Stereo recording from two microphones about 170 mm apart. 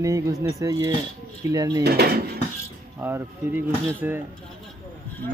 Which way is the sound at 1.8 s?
70° right (ahead or behind).